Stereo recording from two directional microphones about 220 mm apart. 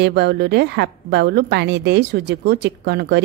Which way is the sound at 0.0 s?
50° right (ahead or behind).